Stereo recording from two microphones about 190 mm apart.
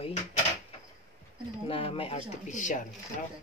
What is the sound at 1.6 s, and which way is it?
Speech, 30° left (ahead or behind).